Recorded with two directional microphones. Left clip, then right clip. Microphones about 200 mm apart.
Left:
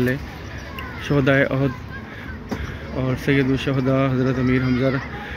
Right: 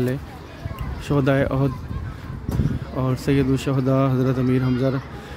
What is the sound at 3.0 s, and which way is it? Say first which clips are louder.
A man's voice: left 1 dB; 15° right (ahead or behind).